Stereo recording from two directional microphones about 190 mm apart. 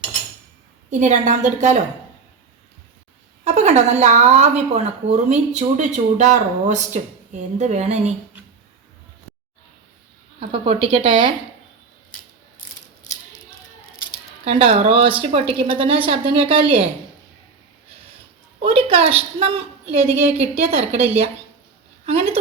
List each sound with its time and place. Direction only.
0.9 s a woman's voice: 40° right (ahead or behind)
3.4 s a woman's voice: 35° right (ahead or behind)
10.5 s a woman's voice: 30° right (ahead or behind)
14.4 s a woman's voice: 30° right (ahead or behind)
18.6 s a woman's voice: 30° right (ahead or behind)
22.0 s a woman's voice: 35° right (ahead or behind)